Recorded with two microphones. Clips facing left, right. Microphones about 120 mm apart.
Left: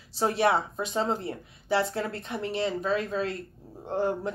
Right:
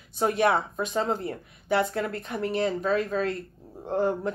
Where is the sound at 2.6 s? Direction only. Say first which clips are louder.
Right 2 dB; 40° right (ahead or behind).